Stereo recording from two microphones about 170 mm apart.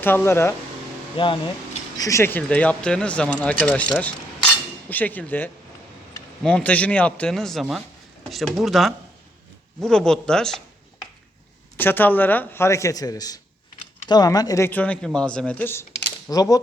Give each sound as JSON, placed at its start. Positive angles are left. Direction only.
{"t": 0.0, "sound": "speech", "side_deg": 15}
{"t": 1.1, "sound": "speech", "side_deg": 30}
{"t": 2.0, "sound": "speech", "side_deg": 20}
{"t": 11.8, "sound": "speech", "side_deg": 10}
{"t": 16.3, "sound": "speech", "side_deg": 20}